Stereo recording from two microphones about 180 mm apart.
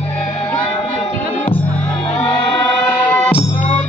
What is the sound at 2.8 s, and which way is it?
Music, 10° left (ahead or behind).